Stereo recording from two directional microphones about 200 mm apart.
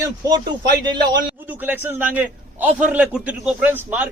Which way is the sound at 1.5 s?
10° right (ahead or behind).